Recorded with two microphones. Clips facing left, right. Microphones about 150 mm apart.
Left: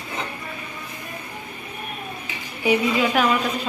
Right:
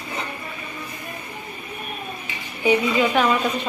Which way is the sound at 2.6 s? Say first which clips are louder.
Right 1 dB; 5° left (ahead or behind).